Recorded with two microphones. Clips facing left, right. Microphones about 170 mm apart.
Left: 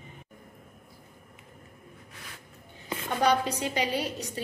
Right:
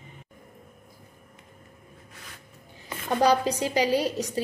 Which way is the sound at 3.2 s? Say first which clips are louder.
Right 3 dB; 35° right (ahead or behind).